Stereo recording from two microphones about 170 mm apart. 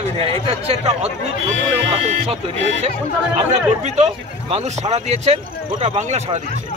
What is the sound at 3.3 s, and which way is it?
Speech, 40° right (ahead or behind).